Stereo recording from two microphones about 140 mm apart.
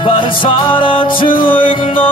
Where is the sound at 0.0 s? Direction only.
35° left (ahead or behind).